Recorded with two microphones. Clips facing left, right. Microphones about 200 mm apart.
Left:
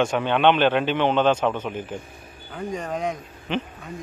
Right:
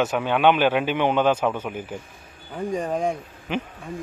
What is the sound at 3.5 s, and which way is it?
Speech, 10° right (ahead or behind).